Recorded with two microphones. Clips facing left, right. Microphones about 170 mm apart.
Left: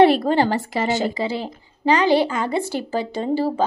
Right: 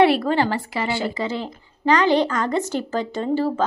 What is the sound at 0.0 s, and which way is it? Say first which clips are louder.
A woman's voice: left 2 dB; 40° left (ahead or behind).